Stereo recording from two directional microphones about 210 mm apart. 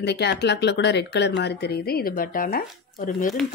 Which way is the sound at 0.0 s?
50° left (ahead or behind).